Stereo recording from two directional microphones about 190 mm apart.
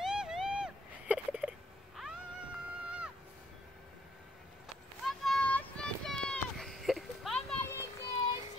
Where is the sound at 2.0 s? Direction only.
Centre (ahead or behind).